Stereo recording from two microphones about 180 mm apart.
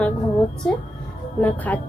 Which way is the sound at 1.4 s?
10° left (ahead or behind).